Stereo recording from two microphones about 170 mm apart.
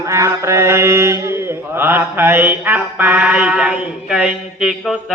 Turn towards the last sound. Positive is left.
turn(degrees=-5)  # may be behind; listen again after turning